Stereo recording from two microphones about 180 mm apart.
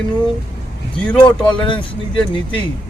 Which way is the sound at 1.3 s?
25° left (ahead or behind).